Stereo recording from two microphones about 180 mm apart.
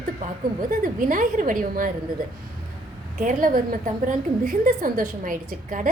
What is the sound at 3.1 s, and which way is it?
A woman's voice, 45° right (ahead or behind).